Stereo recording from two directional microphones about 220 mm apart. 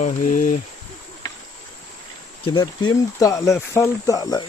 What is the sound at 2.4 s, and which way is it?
Speech, 20° left (ahead or behind).